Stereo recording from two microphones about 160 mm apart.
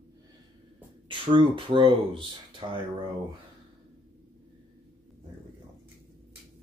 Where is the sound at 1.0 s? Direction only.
30° right (ahead or behind).